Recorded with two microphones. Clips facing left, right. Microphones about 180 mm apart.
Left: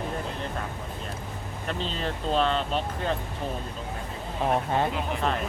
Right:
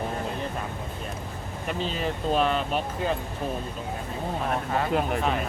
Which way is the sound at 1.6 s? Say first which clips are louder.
Right 2 dB; 10° right (ahead or behind).